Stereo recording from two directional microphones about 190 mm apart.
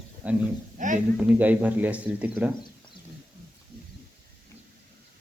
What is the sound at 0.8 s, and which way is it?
Speech, 40° right (ahead or behind).